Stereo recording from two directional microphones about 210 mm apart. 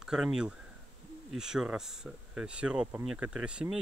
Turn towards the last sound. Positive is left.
turn(degrees=-5)  # may be behind; listen again after turning